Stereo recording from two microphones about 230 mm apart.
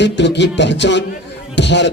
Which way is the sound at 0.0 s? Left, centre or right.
Left.